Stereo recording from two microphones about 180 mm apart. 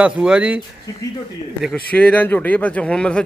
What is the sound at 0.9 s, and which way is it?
Speech, 20° left (ahead or behind).